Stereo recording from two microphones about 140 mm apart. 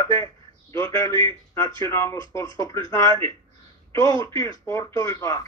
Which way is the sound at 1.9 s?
20° left (ahead or behind).